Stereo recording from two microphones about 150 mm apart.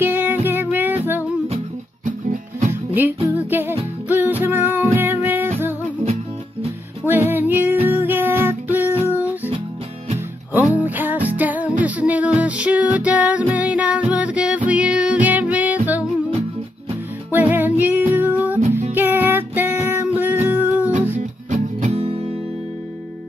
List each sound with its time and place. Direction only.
0.0 s music: 15° right (ahead or behind)
2.7 s music: 10° right (ahead or behind)
7.1 s music: 15° right (ahead or behind)
10.7 s music: 10° right (ahead or behind)
17.3 s music: 10° right (ahead or behind)
21.5 s music: 45° right (ahead or behind)